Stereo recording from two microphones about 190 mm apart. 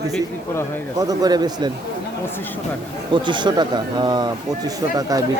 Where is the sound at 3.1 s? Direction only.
25° right (ahead or behind).